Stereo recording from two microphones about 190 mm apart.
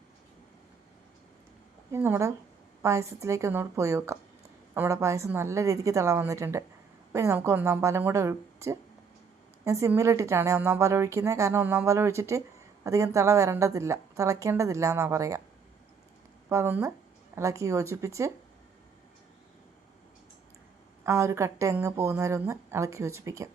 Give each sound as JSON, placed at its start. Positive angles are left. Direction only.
{"t": 1.9, "sound": "a woman's voice", "side_deg": -15}
{"t": 16.5, "sound": "a woman's voice", "side_deg": -15}
{"t": 21.0, "sound": "a woman's voice", "side_deg": -15}